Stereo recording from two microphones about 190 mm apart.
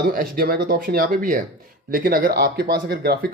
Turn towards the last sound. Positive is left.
turn(degrees=-55)  # may be behind; listen again after turning